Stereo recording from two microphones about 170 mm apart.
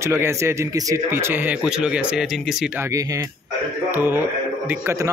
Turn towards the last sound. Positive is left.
turn(degrees=-10)  # may be behind; listen again after turning